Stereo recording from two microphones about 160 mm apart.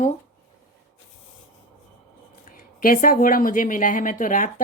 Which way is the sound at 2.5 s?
60° left (ahead or behind).